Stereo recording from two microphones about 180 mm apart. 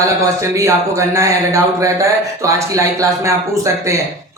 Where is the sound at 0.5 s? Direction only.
15° right (ahead or behind).